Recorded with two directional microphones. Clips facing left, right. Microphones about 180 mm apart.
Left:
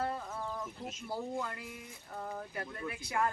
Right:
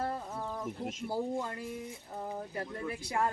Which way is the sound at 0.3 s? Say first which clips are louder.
Right 2 dB; 20° right (ahead or behind).